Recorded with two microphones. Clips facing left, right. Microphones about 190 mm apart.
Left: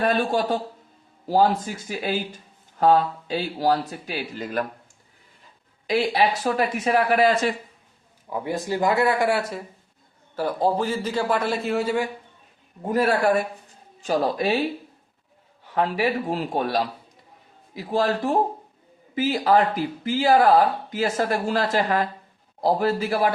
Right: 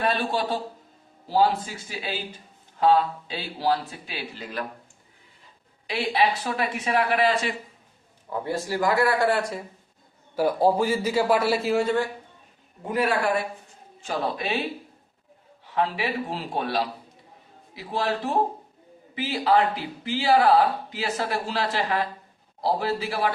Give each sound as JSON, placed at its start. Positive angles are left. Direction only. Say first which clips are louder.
{"t": 0.0, "sound": "speech", "louder": "left 4 dB", "side_deg": 45}
{"t": 5.9, "sound": "speech", "louder": "left 3 dB", "side_deg": 45}
{"t": 8.3, "sound": "a man's voice", "louder": "left 2 dB", "side_deg": 15}
{"t": 9.4, "sound": "speech", "louder": "even", "side_deg": 0}
{"t": 10.3, "sound": "a man's voice", "louder": "right 2 dB", "side_deg": -10}
{"t": 12.9, "sound": "speech", "louder": "left 4 dB", "side_deg": 40}
{"t": 15.7, "sound": "speech", "louder": "left 3 dB", "side_deg": 45}